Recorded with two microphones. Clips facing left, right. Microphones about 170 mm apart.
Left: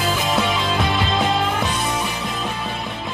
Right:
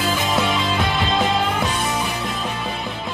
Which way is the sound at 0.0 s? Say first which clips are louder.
Even; centre (ahead or behind).